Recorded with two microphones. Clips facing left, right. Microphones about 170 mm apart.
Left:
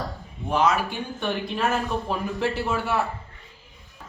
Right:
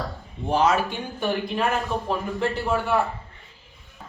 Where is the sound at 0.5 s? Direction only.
30° right (ahead or behind).